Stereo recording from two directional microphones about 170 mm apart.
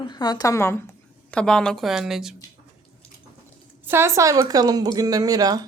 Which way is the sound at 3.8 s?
15° right (ahead or behind).